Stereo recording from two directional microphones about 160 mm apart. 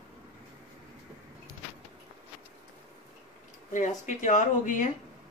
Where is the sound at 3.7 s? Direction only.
50° left (ahead or behind).